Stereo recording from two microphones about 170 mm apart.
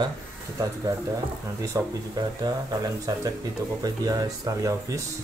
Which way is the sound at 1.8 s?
20° right (ahead or behind).